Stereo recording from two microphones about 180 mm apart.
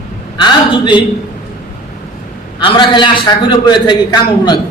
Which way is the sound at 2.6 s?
25° left (ahead or behind).